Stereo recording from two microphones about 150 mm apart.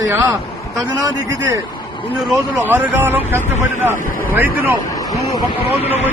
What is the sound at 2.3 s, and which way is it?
A man's voice, 15° right (ahead or behind).